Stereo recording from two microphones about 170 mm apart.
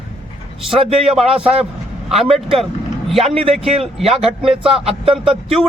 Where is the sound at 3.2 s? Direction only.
35° right (ahead or behind).